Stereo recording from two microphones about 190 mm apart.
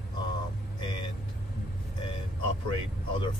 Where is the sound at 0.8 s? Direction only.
25° left (ahead or behind).